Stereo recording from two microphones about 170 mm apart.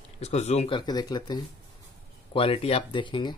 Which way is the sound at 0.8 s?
25° left (ahead or behind).